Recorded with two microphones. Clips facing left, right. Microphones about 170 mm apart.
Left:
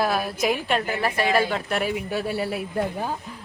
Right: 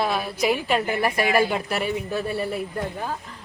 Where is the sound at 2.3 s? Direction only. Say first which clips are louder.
Even; 5° left (ahead or behind).